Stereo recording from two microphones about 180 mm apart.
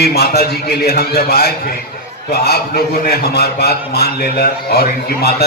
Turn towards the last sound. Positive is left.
turn(degrees=60)  # may be behind; listen again after turning